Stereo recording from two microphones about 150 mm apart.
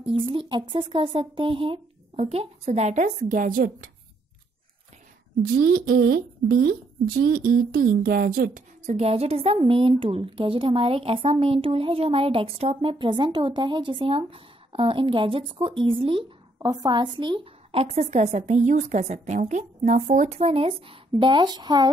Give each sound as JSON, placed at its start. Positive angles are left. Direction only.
{"t": 0.1, "sound": "speech", "side_deg": -35}
{"t": 2.1, "sound": "a woman's voice", "side_deg": -45}
{"t": 5.8, "sound": "speech", "side_deg": -85}
{"t": 8.8, "sound": "a woman's voice", "side_deg": -45}